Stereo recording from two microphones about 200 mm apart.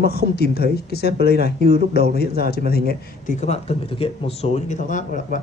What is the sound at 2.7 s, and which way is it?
Speech, 50° left (ahead or behind).